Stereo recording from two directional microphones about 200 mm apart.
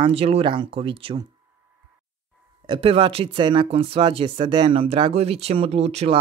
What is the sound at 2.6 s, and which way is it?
Speech, 25° right (ahead or behind).